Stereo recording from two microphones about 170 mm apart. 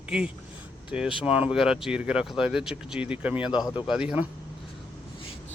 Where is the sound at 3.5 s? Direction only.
25° left (ahead or behind).